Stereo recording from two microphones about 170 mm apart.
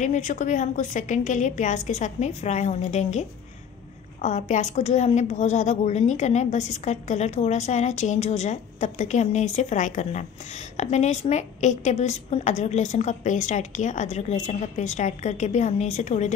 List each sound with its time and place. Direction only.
0.0 s a woman's voice: 45° left (ahead or behind)